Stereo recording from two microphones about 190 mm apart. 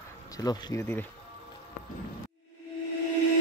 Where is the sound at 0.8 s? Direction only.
10° left (ahead or behind).